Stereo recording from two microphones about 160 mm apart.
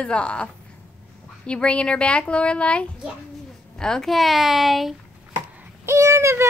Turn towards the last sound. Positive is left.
turn(degrees=-20)  # may be behind; listen again after turning